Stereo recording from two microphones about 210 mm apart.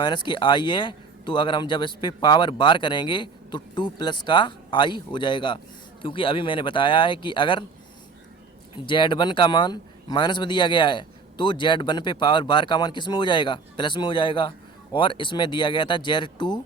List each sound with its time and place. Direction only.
0.0 s a man's voice: 20° left (ahead or behind)
8.7 s a man's voice: 20° left (ahead or behind)